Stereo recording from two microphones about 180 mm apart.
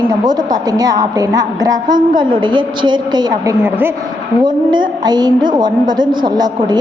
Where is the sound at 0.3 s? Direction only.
20° right (ahead or behind).